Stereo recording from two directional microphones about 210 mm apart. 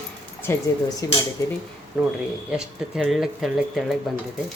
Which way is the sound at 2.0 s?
5° right (ahead or behind).